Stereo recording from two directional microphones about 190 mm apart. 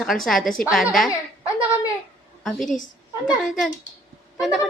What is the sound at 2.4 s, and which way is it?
Speech, centre (ahead or behind).